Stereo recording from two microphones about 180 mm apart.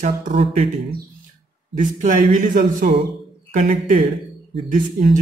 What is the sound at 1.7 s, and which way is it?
Speech, 45° right (ahead or behind).